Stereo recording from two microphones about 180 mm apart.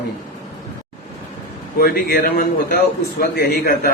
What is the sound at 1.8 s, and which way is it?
A man's voice, 55° left (ahead or behind).